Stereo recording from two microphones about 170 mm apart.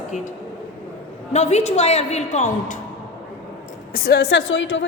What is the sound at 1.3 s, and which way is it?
A woman's voice, 40° left (ahead or behind).